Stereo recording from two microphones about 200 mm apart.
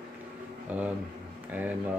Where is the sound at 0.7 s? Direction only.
5° right (ahead or behind).